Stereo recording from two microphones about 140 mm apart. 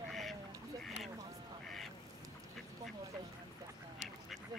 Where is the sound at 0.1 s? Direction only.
Centre (ahead or behind).